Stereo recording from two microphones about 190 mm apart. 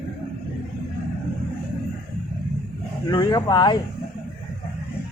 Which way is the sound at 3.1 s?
20° left (ahead or behind).